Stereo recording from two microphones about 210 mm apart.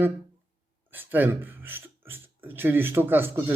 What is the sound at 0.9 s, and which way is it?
Speech, 10° right (ahead or behind).